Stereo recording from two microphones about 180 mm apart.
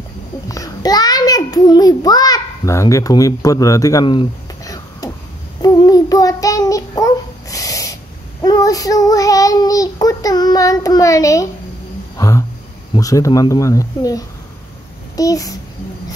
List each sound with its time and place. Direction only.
0.5 s a child's voice: 20° left (ahead or behind)
5.6 s child singing: 20° left (ahead or behind)
12.2 s speech: 20° left (ahead or behind)